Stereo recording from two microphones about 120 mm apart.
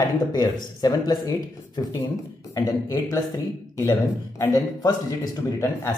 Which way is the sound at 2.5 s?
30° left (ahead or behind).